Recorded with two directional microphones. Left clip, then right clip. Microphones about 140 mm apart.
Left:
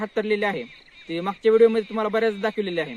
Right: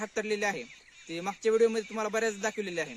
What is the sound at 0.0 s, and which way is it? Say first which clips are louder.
Speech: left 7 dB; 25° right (ahead or behind).